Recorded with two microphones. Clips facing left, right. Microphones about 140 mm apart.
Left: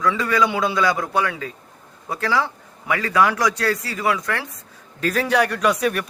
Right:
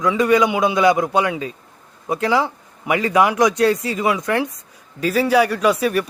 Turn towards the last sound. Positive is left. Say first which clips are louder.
# right 3 dB
turn(degrees=0)  # may be behind; listen again after turning